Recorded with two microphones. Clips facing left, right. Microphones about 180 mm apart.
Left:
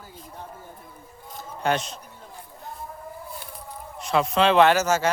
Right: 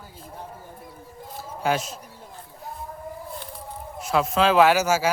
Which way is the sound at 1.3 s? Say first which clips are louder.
Even; 5° right (ahead or behind).